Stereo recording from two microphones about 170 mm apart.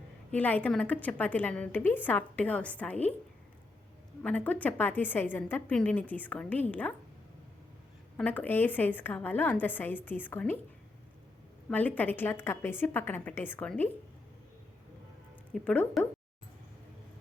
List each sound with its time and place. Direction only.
0.3 s a woman's voice: 10° left (ahead or behind)
4.2 s a woman's voice: 10° left (ahead or behind)
8.1 s a woman's voice: 10° left (ahead or behind)
11.7 s a woman's voice: 10° left (ahead or behind)
15.5 s speech: 5° left (ahead or behind)